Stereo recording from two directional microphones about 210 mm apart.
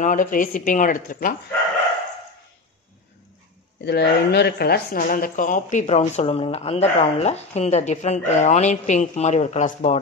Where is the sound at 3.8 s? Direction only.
50° left (ahead or behind).